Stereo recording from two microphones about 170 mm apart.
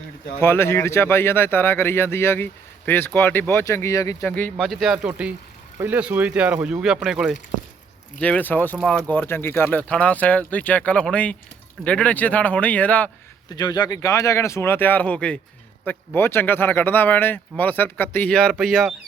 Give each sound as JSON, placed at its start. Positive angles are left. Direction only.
{"t": 0.3, "sound": "speech", "side_deg": 15}
{"t": 8.2, "sound": "speech", "side_deg": 10}
{"t": 13.5, "sound": "speech", "side_deg": 25}